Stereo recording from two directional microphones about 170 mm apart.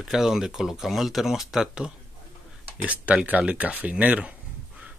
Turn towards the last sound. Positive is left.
turn(degrees=-5)  # may be behind; listen again after turning